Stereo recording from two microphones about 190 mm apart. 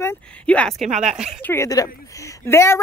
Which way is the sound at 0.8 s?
40° right (ahead or behind).